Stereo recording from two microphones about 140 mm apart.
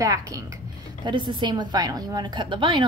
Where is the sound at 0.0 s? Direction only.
25° right (ahead or behind).